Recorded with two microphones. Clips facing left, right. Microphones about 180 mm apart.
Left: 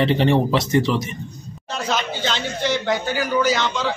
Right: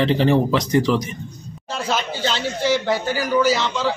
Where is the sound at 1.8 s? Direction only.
10° right (ahead or behind).